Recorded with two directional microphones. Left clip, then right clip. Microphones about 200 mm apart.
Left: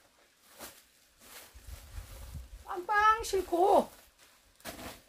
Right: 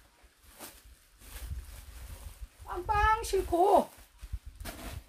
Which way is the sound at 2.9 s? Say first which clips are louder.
Left 1 dB; centre (ahead or behind).